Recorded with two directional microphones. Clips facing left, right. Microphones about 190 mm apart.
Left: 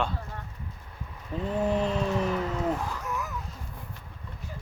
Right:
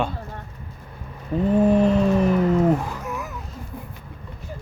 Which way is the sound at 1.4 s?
55° right (ahead or behind).